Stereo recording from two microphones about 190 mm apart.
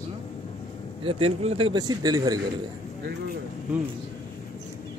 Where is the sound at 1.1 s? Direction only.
30° right (ahead or behind).